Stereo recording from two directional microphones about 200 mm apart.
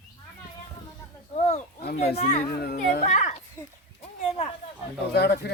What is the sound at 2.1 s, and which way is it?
A child's voice, 35° left (ahead or behind).